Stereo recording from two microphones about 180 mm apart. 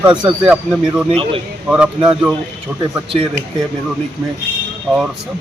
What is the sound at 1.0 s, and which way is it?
Speech, 30° right (ahead or behind).